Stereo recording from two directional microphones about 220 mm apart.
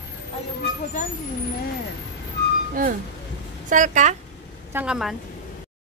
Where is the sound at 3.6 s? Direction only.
35° right (ahead or behind).